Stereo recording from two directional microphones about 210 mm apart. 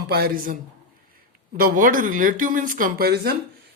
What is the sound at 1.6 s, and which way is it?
Speech, 40° right (ahead or behind).